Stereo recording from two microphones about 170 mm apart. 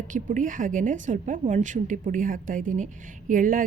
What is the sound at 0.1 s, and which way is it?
A woman's voice, 50° right (ahead or behind).